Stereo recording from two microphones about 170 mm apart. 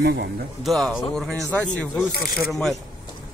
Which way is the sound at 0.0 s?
75° right (ahead or behind).